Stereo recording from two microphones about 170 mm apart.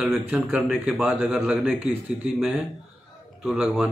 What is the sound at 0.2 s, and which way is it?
A man's voice, 5° right (ahead or behind).